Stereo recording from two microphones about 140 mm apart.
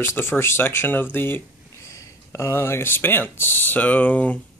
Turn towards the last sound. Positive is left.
turn(degrees=10)  # may be behind; listen again after turning